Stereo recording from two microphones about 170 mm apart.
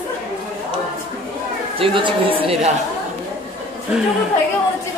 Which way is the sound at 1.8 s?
30° right (ahead or behind).